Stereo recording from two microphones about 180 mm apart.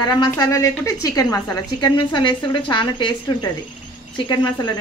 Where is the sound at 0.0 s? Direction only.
25° left (ahead or behind).